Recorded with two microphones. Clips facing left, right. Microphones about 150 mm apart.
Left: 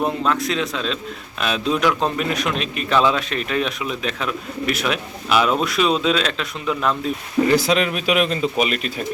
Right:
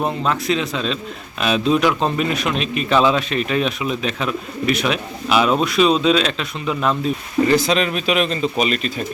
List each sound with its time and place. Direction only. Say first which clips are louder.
0.3 s a man's voice: right 1 dB; centre (ahead or behind)